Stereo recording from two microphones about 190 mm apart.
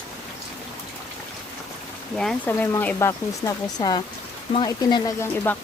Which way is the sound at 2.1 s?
5° left (ahead or behind).